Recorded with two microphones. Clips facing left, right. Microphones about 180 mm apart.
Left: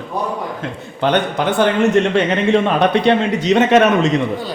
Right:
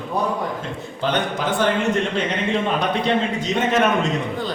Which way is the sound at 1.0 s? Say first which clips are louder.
Left 6 dB; 65° left (ahead or behind).